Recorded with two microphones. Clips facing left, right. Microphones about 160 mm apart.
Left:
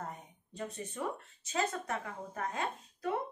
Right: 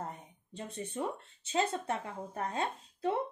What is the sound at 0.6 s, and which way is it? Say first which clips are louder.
A woman's voice: right 2 dB; 30° right (ahead or behind).